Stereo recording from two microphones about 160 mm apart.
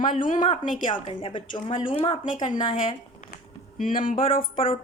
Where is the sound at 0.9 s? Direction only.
30° left (ahead or behind).